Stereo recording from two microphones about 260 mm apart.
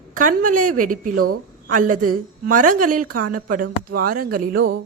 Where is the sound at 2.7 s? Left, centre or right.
Right.